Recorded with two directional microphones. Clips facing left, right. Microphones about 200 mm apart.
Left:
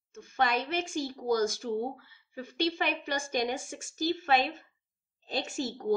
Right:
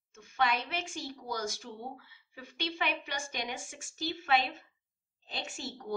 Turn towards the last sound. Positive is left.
turn(degrees=40)  # may be behind; listen again after turning